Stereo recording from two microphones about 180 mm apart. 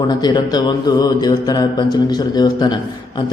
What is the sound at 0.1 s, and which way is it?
A man's voice, 25° left (ahead or behind).